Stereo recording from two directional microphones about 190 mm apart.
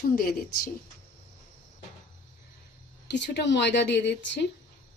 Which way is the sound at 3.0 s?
65° left (ahead or behind).